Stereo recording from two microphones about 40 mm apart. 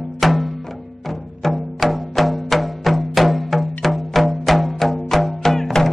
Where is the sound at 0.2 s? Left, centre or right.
Centre.